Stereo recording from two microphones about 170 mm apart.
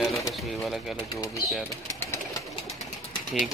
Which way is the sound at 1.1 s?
20° left (ahead or behind).